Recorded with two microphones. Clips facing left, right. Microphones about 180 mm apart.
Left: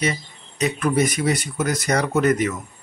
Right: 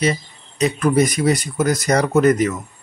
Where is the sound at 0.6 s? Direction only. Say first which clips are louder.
Right 4 dB; 40° right (ahead or behind).